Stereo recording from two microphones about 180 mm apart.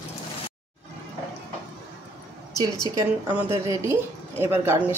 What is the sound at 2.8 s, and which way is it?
Speech, 20° right (ahead or behind).